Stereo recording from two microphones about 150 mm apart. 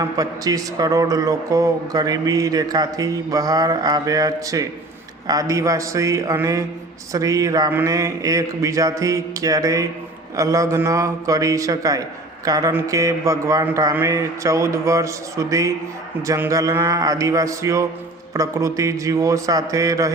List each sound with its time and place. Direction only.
0.0 s speech: 25° right (ahead or behind)